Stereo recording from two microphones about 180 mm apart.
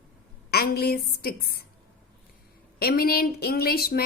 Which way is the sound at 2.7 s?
55° left (ahead or behind).